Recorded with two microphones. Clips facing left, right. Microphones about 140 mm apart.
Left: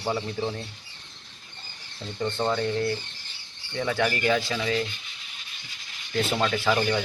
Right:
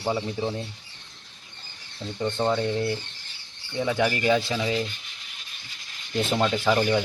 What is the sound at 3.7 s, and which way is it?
Speech, 20° right (ahead or behind).